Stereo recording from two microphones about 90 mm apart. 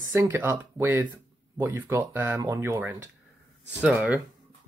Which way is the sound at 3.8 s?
15° right (ahead or behind).